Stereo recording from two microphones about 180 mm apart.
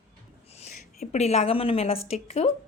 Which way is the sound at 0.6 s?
40° left (ahead or behind).